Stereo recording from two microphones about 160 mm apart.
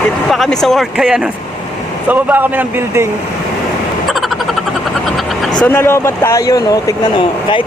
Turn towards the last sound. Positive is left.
turn(degrees=20)  # may be behind; listen again after turning